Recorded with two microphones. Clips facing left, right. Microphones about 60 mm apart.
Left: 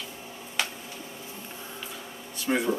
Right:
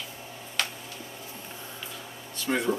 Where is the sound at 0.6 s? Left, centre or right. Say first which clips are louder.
Left 1 dB; centre.